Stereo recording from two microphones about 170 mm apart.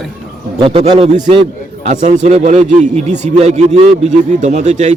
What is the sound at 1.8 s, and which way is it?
A man's voice, 40° right (ahead or behind).